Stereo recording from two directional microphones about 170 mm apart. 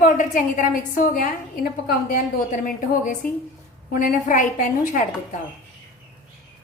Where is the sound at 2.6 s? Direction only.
55° left (ahead or behind).